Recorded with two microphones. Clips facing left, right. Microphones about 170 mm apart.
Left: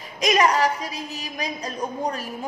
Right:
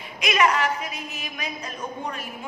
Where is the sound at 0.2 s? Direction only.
35° left (ahead or behind).